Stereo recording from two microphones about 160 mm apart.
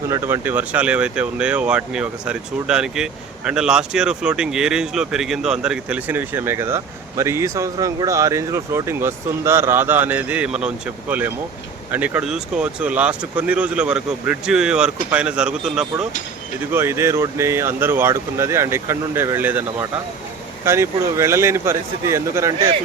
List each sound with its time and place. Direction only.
0.1 s speech: 15° right (ahead or behind)
11.9 s speech: 10° right (ahead or behind)
16.7 s speech: 15° right (ahead or behind)